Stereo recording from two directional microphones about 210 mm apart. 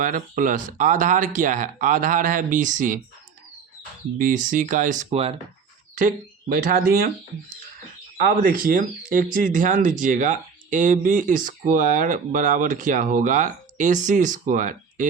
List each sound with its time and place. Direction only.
0.0 s speech: 40° right (ahead or behind)
4.2 s speech: 40° right (ahead or behind)
8.2 s speech: 40° right (ahead or behind)